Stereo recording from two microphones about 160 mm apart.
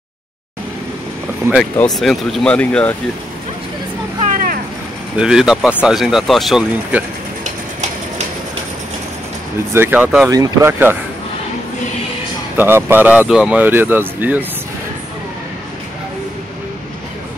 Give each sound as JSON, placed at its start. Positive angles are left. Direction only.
{"t": 1.6, "sound": "speech", "side_deg": 0}
{"t": 4.3, "sound": "vehicle", "side_deg": -65}
{"t": 5.1, "sound": "speech", "side_deg": -5}
{"t": 9.8, "sound": "speech", "side_deg": -10}
{"t": 10.3, "sound": "speech", "side_deg": -20}
{"t": 12.5, "sound": "speech", "side_deg": -15}